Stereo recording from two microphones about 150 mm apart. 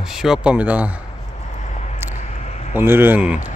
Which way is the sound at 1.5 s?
50° left (ahead or behind).